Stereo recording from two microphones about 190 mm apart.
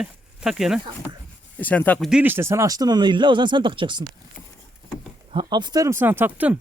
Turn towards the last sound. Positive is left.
turn(degrees=-10)  # may be behind; listen again after turning